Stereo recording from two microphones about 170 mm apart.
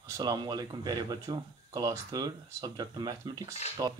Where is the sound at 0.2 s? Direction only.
25° right (ahead or behind).